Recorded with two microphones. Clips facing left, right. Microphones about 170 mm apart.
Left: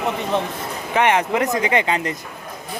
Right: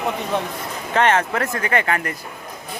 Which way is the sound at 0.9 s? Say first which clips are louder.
Even; 15° left (ahead or behind).